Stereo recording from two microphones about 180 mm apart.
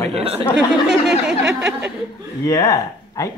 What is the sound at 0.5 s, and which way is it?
Speech, 5° right (ahead or behind).